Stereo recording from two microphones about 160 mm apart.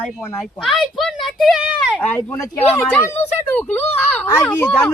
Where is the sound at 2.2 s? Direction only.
20° left (ahead or behind).